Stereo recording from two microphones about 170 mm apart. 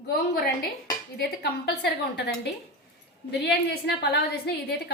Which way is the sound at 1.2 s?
70° left (ahead or behind).